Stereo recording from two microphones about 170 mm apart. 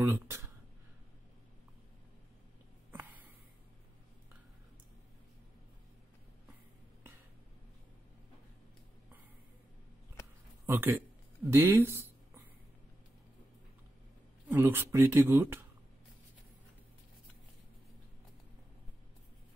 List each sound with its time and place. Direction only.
0.0 s speech: 20° right (ahead or behind)
10.7 s speech: 10° right (ahead or behind)
14.5 s speech: 15° right (ahead or behind)